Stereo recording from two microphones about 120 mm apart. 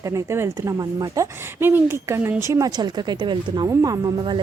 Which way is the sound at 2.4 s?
30° right (ahead or behind).